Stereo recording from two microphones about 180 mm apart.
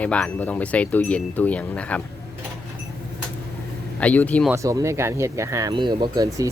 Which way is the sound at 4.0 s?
10° left (ahead or behind).